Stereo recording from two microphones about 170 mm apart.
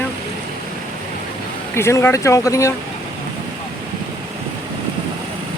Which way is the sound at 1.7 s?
15° left (ahead or behind).